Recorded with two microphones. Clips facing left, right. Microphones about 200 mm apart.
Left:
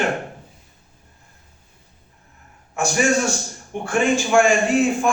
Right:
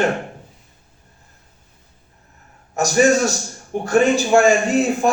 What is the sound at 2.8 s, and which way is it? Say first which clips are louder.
A man's voice: right 4 dB; 40° right (ahead or behind).